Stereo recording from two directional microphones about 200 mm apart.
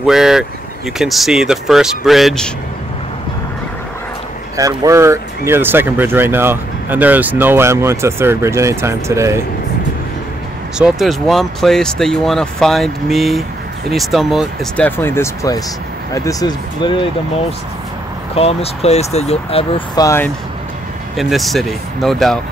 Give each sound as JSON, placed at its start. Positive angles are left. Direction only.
{"t": 0.0, "sound": "speech", "side_deg": 0}
{"t": 4.6, "sound": "speech", "side_deg": -15}
{"t": 10.8, "sound": "speech", "side_deg": 0}
{"t": 18.3, "sound": "speech", "side_deg": 30}
{"t": 20.0, "sound": "speech", "side_deg": 15}
{"t": 21.2, "sound": "speech", "side_deg": 0}